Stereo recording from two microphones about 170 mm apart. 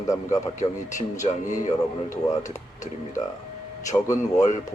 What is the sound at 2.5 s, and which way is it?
Speech, 45° left (ahead or behind).